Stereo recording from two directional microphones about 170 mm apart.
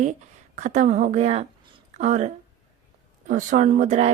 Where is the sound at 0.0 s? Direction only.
45° right (ahead or behind).